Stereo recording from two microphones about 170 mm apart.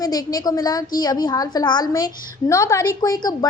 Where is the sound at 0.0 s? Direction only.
20° left (ahead or behind).